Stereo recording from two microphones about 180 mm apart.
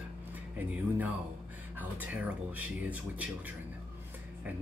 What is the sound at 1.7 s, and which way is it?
Speech, 10° right (ahead or behind).